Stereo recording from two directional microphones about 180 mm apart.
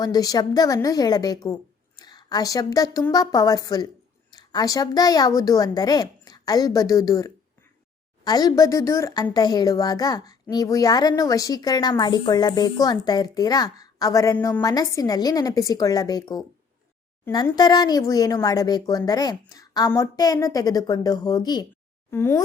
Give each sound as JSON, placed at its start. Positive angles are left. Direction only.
{"t": 0.0, "sound": "a woman's voice", "side_deg": 20}